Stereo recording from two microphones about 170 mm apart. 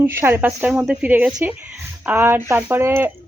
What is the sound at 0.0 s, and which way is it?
A woman's voice, 15° right (ahead or behind).